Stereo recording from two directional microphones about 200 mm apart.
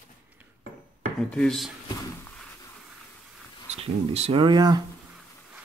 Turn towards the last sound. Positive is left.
turn(degrees=-20)  # may be behind; listen again after turning